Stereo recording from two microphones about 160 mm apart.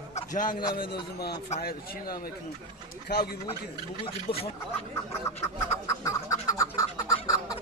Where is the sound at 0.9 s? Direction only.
90° left.